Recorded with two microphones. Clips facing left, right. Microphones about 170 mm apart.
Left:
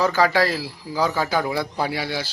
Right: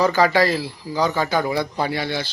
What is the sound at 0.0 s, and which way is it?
Speech, centre (ahead or behind).